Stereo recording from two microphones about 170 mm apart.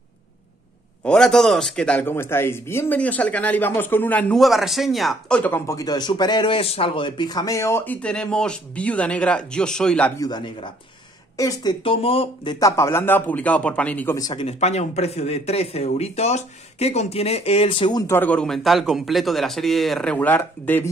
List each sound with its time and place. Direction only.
1.0 s speech: 5° left (ahead or behind)
10.2 s speech: 25° left (ahead or behind)
11.8 s speech: 35° left (ahead or behind)
12.5 s speech: 20° left (ahead or behind)
14.1 s speech: 20° left (ahead or behind)
14.4 s speech: 40° left (ahead or behind); by 20.9 s 10° left (ahead or behind)